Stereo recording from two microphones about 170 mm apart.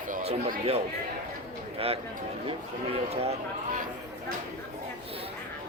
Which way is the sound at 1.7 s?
35° right (ahead or behind).